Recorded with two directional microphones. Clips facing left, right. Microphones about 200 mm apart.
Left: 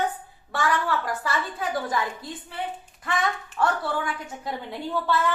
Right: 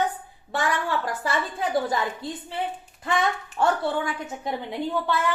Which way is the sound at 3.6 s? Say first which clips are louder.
Right 3 dB; 25° right (ahead or behind).